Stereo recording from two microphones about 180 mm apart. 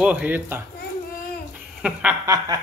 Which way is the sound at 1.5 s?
10° right (ahead or behind).